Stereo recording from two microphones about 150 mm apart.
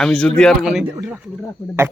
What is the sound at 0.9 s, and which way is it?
Speech, 20° right (ahead or behind).